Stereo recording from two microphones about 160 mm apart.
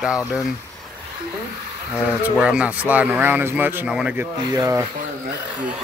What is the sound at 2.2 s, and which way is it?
Speech, 5° right (ahead or behind).